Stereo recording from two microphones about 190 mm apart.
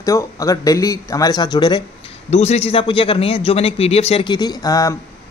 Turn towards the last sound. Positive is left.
turn(degrees=20)  # may be behind; listen again after turning